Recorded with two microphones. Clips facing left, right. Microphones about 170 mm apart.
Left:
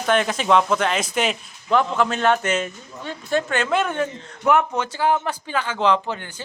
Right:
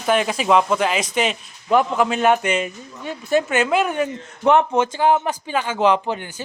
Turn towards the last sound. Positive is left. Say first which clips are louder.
# right 2 dB
turn(degrees=-15)  # may be behind; listen again after turning